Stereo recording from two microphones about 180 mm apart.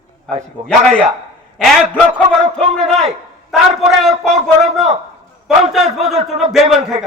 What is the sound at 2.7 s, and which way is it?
A man's voice, centre (ahead or behind).